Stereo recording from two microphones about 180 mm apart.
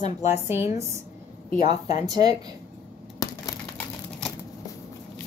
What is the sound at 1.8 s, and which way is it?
Speech, 20° right (ahead or behind).